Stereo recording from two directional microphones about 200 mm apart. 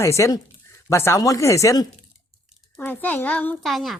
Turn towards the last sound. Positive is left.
turn(degrees=0)  # may be behind; listen again after turning